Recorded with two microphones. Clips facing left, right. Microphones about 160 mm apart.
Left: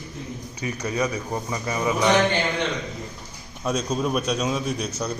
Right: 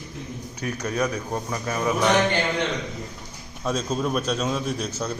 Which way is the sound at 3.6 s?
Centre (ahead or behind).